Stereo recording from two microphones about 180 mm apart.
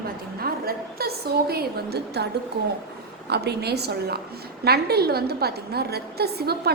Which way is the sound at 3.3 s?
65° right (ahead or behind).